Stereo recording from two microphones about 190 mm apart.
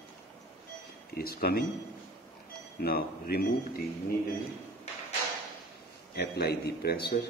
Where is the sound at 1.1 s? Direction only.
55° left (ahead or behind).